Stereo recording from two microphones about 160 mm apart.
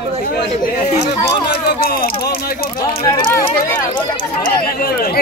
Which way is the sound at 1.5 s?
75° left (ahead or behind).